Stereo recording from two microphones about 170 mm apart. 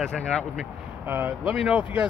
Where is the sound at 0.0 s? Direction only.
5° left (ahead or behind).